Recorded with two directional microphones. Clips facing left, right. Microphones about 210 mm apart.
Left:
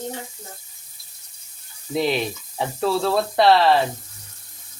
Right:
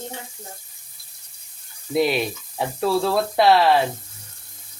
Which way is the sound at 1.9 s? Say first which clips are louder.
Right 2 dB; 5° right (ahead or behind).